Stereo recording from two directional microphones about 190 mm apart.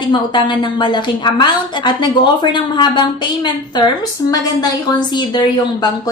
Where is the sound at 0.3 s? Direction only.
25° left (ahead or behind).